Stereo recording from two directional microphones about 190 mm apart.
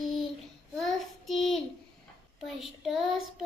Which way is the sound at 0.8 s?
Centre (ahead or behind).